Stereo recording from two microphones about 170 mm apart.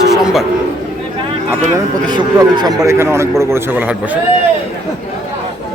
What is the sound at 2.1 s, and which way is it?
A man's voice, 25° right (ahead or behind).